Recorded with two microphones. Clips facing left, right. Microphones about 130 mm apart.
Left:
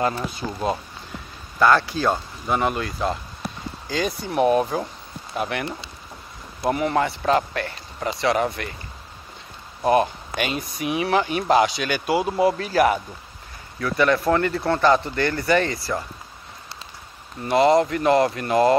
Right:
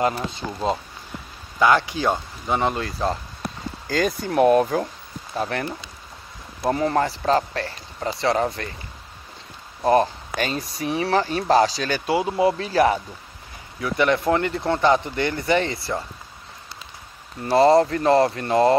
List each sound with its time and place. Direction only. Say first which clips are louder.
1.6 s speech: even; 15° right (ahead or behind)
3.9 s speech: right 3 dB; 50° right (ahead or behind)
4.4 s speech: right 2 dB; 5° left (ahead or behind)
5.3 s speech: right 1 dB; 35° right (ahead or behind)
6.7 s speech: right 1 dB; 35° right (ahead or behind)
9.8 s speech: right 1 dB; 35° right (ahead or behind)
12.1 s speech: even; 20° right (ahead or behind)
17.5 s speech: right 2 dB; 35° right (ahead or behind)